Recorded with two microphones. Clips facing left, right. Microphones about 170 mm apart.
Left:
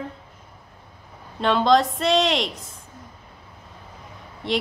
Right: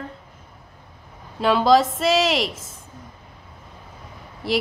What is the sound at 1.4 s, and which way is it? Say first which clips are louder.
Speech: right 2 dB; 5° right (ahead or behind).